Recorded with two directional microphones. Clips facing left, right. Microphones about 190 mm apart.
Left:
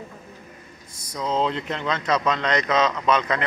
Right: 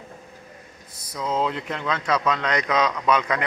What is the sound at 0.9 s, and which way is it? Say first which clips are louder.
Speech: left 1 dB; 5° right (ahead or behind).